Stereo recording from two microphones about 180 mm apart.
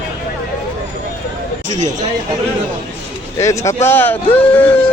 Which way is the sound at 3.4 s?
15° left (ahead or behind).